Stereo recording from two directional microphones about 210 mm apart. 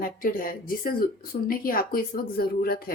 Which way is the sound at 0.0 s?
40° left (ahead or behind).